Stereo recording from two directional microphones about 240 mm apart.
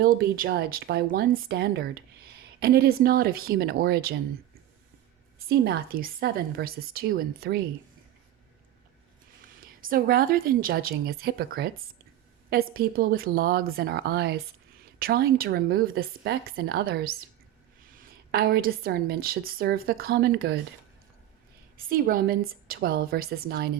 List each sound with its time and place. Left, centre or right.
0.0 s a woman's voice: right
5.4 s a woman's voice: right
9.8 s a woman's voice: right
21.8 s a woman's voice: right